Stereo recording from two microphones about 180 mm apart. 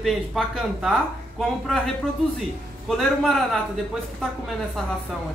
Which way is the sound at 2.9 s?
Centre (ahead or behind).